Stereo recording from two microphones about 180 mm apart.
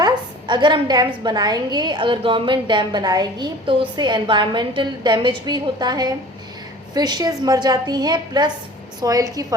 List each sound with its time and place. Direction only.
0.0 s a woman's voice: 25° right (ahead or behind)